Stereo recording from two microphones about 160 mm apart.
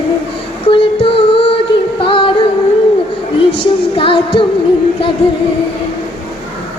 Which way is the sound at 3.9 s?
35° left (ahead or behind).